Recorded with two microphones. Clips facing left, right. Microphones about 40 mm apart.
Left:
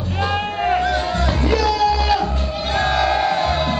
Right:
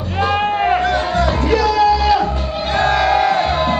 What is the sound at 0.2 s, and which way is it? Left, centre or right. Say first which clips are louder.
Sheep: right 5 dB; centre.